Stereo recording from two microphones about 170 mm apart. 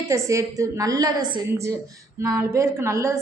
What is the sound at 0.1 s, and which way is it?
A woman's voice, 20° right (ahead or behind).